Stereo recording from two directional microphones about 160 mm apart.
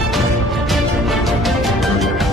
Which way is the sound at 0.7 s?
Centre (ahead or behind).